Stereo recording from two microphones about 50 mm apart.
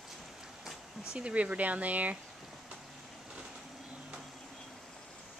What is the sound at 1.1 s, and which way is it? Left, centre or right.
Speech, right.